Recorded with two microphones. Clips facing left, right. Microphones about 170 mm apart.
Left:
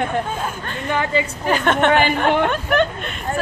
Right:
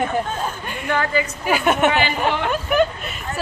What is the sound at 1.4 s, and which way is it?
A woman's voice, 10° right (ahead or behind).